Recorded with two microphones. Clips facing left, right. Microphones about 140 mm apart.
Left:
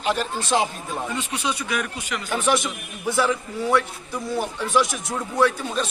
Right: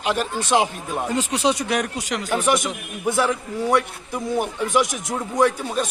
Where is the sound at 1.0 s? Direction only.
80° right.